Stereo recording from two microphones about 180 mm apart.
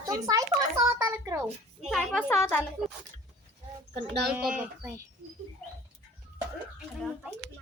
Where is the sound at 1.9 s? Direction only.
Centre (ahead or behind).